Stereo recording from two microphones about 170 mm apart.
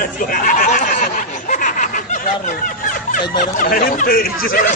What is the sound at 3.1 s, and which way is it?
Speech, 50° left (ahead or behind).